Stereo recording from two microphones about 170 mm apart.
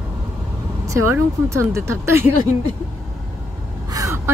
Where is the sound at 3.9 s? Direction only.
20° right (ahead or behind).